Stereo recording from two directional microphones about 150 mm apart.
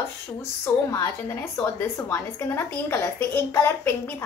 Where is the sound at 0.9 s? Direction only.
20° left (ahead or behind).